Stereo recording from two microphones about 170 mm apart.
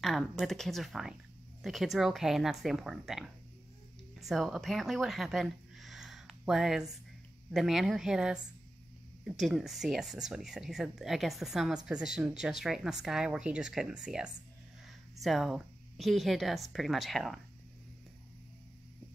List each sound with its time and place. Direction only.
0.0 s speech: centre (ahead or behind)